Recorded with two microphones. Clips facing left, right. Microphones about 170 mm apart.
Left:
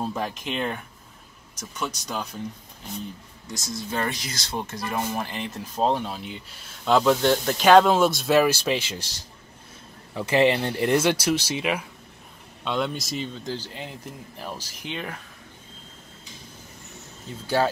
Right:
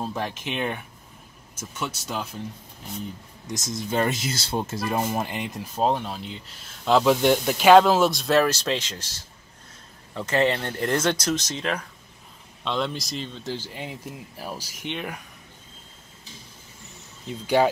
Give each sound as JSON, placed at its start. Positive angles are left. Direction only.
{"t": 0.0, "sound": "speech", "side_deg": 0}
{"t": 3.4, "sound": "speech", "side_deg": -20}
{"t": 5.8, "sound": "speech", "side_deg": 0}
{"t": 10.1, "sound": "speech", "side_deg": 10}
{"t": 17.3, "sound": "speech", "side_deg": -15}